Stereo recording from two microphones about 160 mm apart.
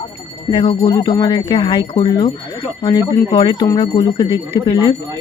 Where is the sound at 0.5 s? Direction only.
35° left (ahead or behind).